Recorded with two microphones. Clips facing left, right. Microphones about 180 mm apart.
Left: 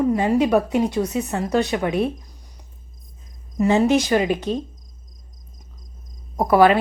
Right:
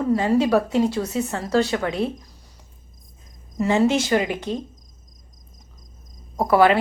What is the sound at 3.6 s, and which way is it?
Speech, 15° left (ahead or behind).